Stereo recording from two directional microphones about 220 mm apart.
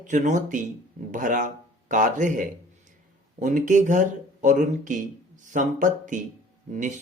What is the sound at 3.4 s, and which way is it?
Speech, 35° right (ahead or behind).